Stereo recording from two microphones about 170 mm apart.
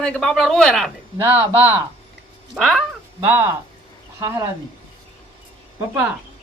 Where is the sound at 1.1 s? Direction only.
10° right (ahead or behind).